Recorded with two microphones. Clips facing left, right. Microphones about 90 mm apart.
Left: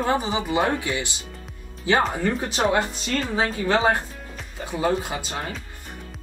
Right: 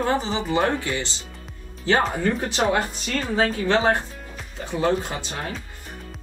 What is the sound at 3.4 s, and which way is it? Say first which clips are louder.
Speech: even; 10° left (ahead or behind).